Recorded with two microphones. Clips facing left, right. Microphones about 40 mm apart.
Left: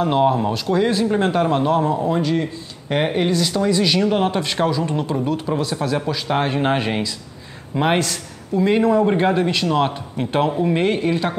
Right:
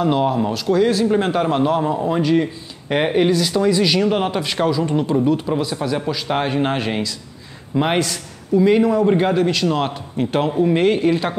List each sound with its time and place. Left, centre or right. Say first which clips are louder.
0.0 s speech: left 1 dB; centre
1.0 s a man's voice: right 1 dB; centre